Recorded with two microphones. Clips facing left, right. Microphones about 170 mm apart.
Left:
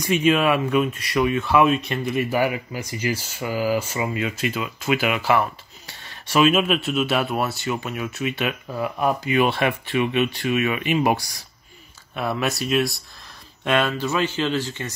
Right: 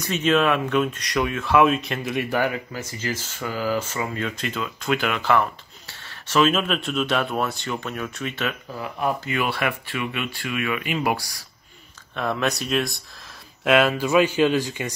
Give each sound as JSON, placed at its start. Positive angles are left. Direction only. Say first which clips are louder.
{"t": 0.0, "sound": "speech", "louder": "left 2 dB", "side_deg": 10}
{"t": 12.1, "sound": "speech", "louder": "even", "side_deg": 5}